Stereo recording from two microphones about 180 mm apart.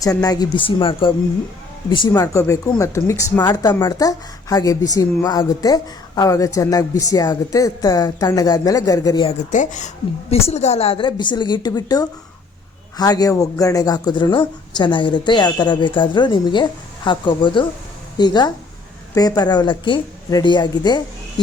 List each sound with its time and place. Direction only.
0.0 s a woman's voice: 20° left (ahead or behind)
9.2 s a woman's voice: 40° left (ahead or behind); by 21.4 s 25° left (ahead or behind)